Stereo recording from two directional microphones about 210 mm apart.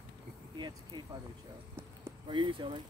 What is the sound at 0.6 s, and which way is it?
Speech, 20° right (ahead or behind).